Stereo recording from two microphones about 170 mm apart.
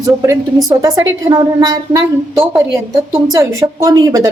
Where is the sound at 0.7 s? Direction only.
20° right (ahead or behind).